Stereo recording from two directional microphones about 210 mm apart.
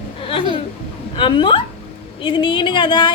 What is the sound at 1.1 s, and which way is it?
Speech, 20° left (ahead or behind).